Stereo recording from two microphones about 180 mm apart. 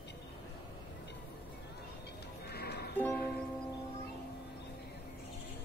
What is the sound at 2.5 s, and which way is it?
Music, 60° left (ahead or behind).